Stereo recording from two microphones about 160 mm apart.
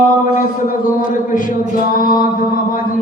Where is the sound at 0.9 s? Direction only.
55° left (ahead or behind).